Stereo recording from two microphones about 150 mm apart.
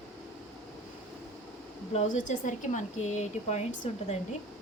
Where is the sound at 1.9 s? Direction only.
55° left (ahead or behind).